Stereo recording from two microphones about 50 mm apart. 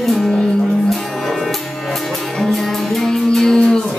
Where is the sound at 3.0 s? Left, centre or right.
Centre.